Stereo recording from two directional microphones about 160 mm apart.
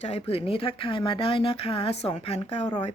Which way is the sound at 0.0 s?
40° left (ahead or behind).